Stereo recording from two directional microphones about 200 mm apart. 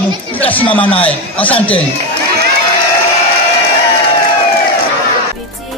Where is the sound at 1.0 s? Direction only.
5° left (ahead or behind).